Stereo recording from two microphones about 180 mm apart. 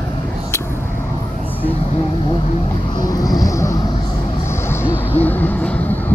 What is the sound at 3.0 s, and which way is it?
Vehicle, 20° left (ahead or behind).